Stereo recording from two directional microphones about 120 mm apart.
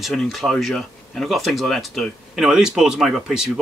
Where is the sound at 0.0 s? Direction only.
Centre (ahead or behind).